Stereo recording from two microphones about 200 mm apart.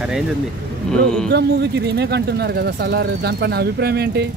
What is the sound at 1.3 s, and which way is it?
Speech, 55° right (ahead or behind).